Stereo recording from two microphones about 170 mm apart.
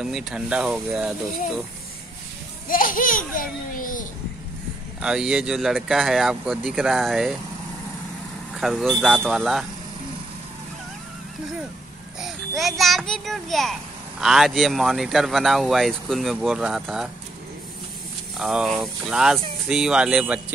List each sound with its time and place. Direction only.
0.0 s speech: 5° right (ahead or behind)
2.7 s a child's voice: 55° left (ahead or behind)
5.0 s speech: 5° right (ahead or behind)
8.5 s speech: centre (ahead or behind)
12.2 s a child's voice: centre (ahead or behind)
18.4 s speech: 5° right (ahead or behind)